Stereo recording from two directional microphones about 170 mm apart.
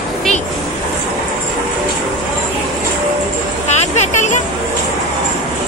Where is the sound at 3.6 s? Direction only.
40° left (ahead or behind).